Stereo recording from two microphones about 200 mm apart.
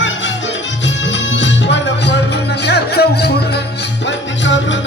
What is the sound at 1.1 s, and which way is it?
Music, 65° left (ahead or behind).